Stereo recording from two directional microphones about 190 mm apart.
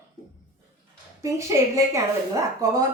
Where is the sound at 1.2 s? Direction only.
15° right (ahead or behind).